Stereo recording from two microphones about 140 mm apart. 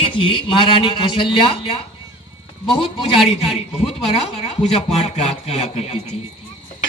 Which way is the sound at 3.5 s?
50° left (ahead or behind).